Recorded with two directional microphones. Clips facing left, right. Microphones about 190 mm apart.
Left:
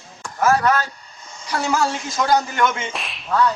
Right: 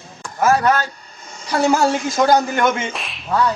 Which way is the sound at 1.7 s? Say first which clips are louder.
Right 5 dB; 35° right (ahead or behind).